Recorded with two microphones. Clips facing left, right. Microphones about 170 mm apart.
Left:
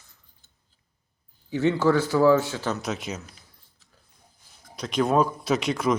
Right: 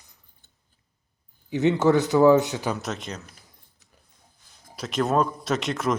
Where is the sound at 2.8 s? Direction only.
Centre (ahead or behind).